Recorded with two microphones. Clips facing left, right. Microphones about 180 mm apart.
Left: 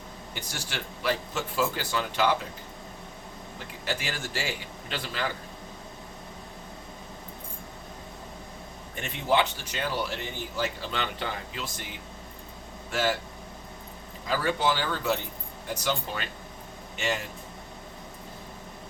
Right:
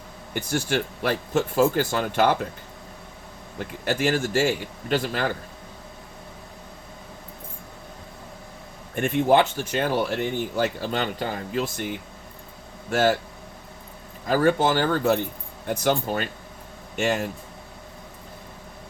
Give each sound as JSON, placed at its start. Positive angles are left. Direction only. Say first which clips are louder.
{"t": 0.3, "sound": "speech", "louder": "right 13 dB", "side_deg": -50}
{"t": 3.6, "sound": "speech", "louder": "right 9 dB", "side_deg": -50}
{"t": 9.0, "sound": "speech", "louder": "right 7 dB", "side_deg": -50}
{"t": 14.3, "sound": "speech", "louder": "right 7 dB", "side_deg": -50}